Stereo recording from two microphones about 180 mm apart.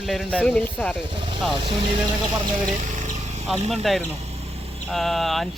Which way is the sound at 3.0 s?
40° right (ahead or behind).